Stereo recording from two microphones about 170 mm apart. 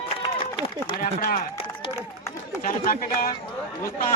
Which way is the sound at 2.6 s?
55° left (ahead or behind).